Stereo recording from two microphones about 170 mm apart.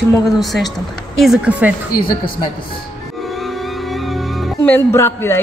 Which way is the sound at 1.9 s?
60° left (ahead or behind).